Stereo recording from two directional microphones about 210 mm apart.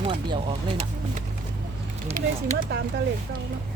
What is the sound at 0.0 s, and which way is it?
Speech, 25° right (ahead or behind).